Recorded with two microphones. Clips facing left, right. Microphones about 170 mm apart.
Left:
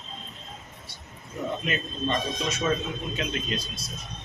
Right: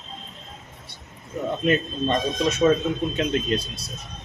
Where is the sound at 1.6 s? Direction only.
45° right (ahead or behind).